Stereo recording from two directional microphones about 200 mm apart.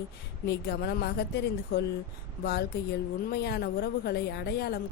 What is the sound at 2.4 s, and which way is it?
A woman's voice, 55° left (ahead or behind).